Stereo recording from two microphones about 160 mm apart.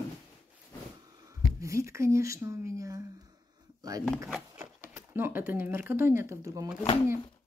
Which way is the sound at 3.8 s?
20° right (ahead or behind).